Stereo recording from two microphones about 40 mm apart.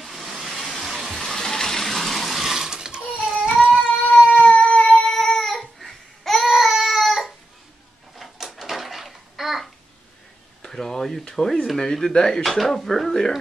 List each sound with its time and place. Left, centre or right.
0.0 s water: centre
3.2 s a sound: centre
4.2 s cat: left
5.0 s babbling: centre
6.5 s cat: centre
8.2 s a sound: centre
10.6 s a sound: centre
11.8 s speech: centre
12.4 s speech: centre